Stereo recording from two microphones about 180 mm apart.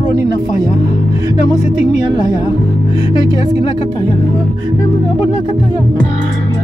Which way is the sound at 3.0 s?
20° right (ahead or behind).